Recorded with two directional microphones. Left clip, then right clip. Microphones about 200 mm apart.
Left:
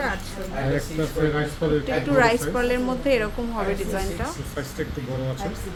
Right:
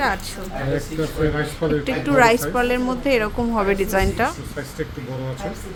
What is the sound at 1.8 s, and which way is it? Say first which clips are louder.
A woman's voice: right 5 dB; 20° right (ahead or behind).